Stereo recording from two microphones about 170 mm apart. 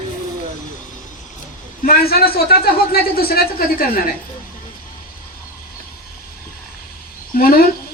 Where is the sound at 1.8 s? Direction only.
65° left (ahead or behind).